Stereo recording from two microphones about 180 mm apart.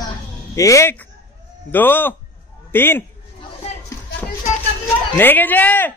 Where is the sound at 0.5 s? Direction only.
20° left (ahead or behind).